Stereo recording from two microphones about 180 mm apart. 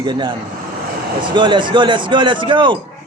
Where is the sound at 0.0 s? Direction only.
25° right (ahead or behind).